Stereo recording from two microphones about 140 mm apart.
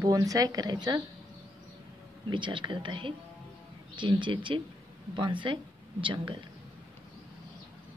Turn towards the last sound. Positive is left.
turn(degrees=-35)  # may be behind; listen again after turning